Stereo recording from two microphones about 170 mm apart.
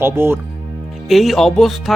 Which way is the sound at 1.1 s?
Centre (ahead or behind).